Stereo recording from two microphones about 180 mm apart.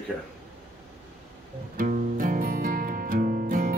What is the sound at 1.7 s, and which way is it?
Music, 50° right (ahead or behind).